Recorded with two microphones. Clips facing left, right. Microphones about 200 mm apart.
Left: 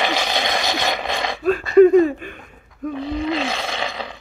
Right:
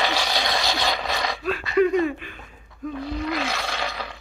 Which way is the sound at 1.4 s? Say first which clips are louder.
Left 10 dB; 45° left (ahead or behind).